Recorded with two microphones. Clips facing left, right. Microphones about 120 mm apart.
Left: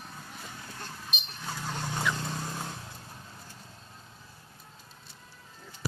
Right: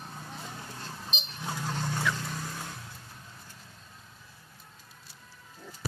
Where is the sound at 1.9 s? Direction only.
15° left (ahead or behind).